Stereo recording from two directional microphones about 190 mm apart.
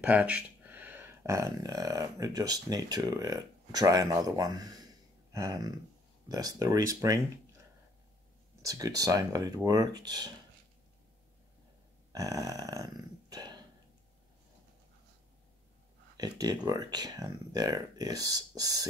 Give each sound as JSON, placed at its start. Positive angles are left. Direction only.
{"t": 0.0, "sound": "speech", "side_deg": -5}
{"t": 5.3, "sound": "a sound", "side_deg": -20}
{"t": 6.2, "sound": "speech", "side_deg": -20}
{"t": 8.6, "sound": "speech", "side_deg": -20}
{"t": 12.1, "sound": "burping", "side_deg": -20}
{"t": 16.2, "sound": "speech", "side_deg": -20}